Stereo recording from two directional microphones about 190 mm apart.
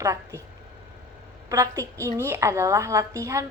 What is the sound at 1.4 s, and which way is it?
A woman's voice, 15° right (ahead or behind).